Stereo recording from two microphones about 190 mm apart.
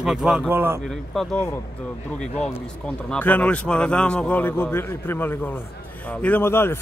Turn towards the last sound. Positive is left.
turn(degrees=10)  # may be behind; listen again after turning